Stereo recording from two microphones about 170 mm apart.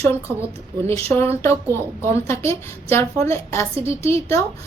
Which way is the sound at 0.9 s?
15° left (ahead or behind).